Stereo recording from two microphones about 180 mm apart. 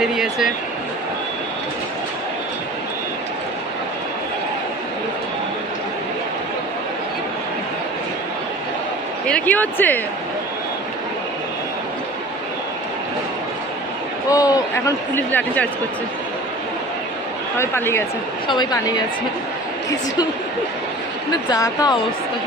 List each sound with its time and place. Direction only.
0.0 s a sound: centre (ahead or behind)
9.2 s speech: 5° left (ahead or behind)
14.3 s speech: 20° left (ahead or behind)
17.6 s speech: 15° left (ahead or behind)
18.4 s a woman's voice: 25° left (ahead or behind)
21.5 s a woman's voice: 20° left (ahead or behind)